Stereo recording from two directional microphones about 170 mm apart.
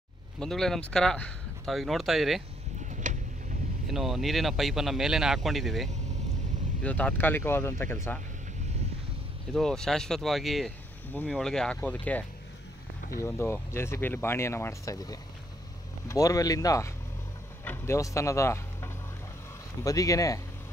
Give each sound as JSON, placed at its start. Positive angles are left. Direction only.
{"t": 0.4, "sound": "speech", "side_deg": 0}
{"t": 2.8, "sound": "a sound", "side_deg": -45}
{"t": 3.8, "sound": "speech", "side_deg": 0}
{"t": 9.5, "sound": "speech", "side_deg": 5}